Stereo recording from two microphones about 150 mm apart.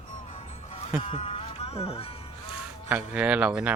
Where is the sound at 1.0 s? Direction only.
40° left (ahead or behind).